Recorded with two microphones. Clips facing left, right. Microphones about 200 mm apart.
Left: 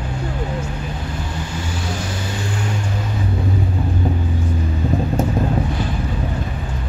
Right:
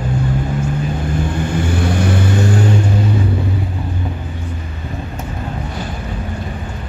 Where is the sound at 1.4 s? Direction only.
55° right (ahead or behind).